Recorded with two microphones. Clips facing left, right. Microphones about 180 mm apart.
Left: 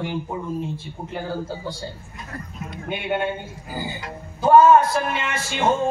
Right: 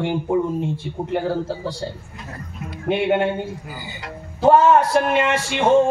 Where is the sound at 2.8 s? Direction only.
70° right (ahead or behind).